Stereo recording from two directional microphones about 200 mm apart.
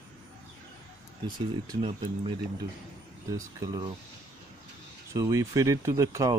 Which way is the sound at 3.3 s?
20° right (ahead or behind).